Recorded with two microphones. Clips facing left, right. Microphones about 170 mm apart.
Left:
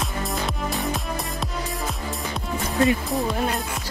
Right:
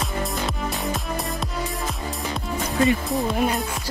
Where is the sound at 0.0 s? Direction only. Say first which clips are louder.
Right 1 dB; centre (ahead or behind).